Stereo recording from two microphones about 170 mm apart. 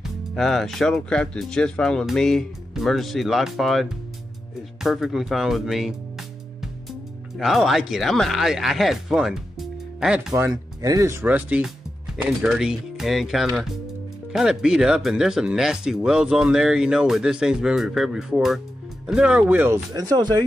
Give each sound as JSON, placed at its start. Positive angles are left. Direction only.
{"t": 0.0, "sound": "speech", "side_deg": 0}
{"t": 10.3, "sound": "speech", "side_deg": -20}